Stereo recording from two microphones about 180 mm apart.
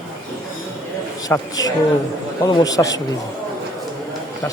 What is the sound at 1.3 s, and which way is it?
A man's voice, 20° left (ahead or behind).